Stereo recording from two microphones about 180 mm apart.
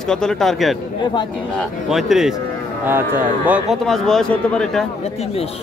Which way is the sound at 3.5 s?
Centre (ahead or behind).